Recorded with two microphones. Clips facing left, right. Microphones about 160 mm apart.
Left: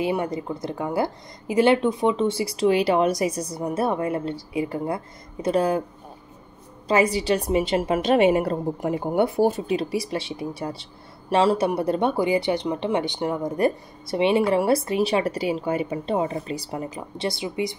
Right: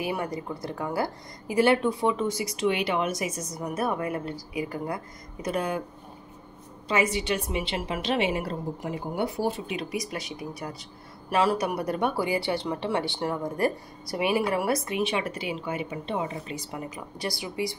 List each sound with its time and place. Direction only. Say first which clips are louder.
0.0 s speech: left 5 dB; 20° left (ahead or behind)
6.9 s a woman's voice: left 6 dB; 35° left (ahead or behind); by 9.6 s 50° left (ahead or behind)
9.7 s speech: left 7 dB; 30° left (ahead or behind)